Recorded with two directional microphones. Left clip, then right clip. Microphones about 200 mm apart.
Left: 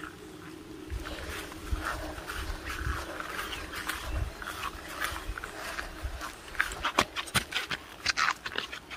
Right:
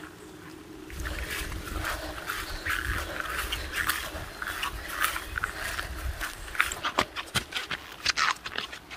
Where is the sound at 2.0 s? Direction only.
5° right (ahead or behind).